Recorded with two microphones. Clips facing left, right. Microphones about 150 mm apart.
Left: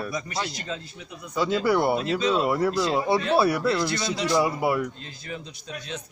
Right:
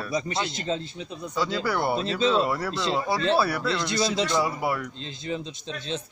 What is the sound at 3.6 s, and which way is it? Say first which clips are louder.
Speech: left 1 dB; 20° right (ahead or behind).